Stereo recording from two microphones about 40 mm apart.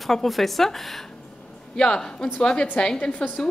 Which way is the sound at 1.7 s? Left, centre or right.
Centre.